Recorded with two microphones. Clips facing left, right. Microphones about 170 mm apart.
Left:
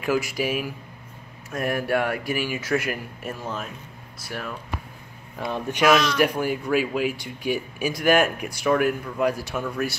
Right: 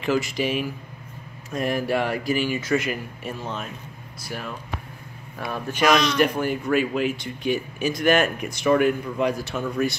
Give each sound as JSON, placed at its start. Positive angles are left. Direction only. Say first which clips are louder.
{"t": 0.0, "sound": "speech", "louder": "right 1 dB", "side_deg": 10}
{"t": 5.4, "sound": "speech", "louder": "left 1 dB", "side_deg": 15}
{"t": 5.9, "sound": "speech", "louder": "even", "side_deg": 5}